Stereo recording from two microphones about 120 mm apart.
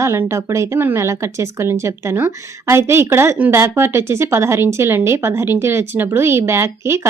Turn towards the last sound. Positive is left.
turn(degrees=-20)  # may be behind; listen again after turning